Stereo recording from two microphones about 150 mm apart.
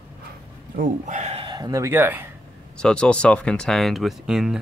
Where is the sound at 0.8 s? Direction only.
60° right (ahead or behind).